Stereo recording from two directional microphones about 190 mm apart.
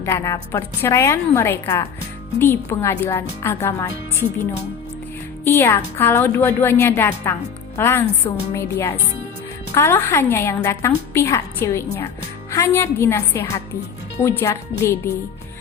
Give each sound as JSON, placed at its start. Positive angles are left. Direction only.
{"t": 0.0, "sound": "a woman's voice", "side_deg": 15}
{"t": 5.5, "sound": "a woman's voice", "side_deg": 10}